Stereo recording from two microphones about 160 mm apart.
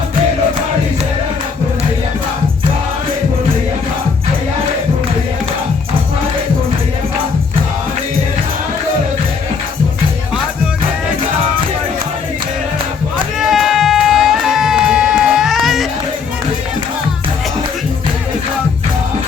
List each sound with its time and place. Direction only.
13.4 s music: centre (ahead or behind)